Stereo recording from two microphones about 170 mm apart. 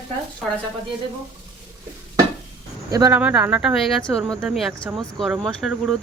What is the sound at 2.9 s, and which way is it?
Speech, 20° right (ahead or behind).